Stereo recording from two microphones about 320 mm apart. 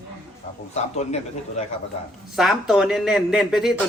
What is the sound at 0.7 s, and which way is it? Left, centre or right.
Speech, centre.